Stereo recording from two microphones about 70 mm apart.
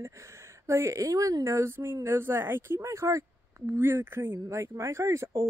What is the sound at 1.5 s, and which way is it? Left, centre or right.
Speech, right.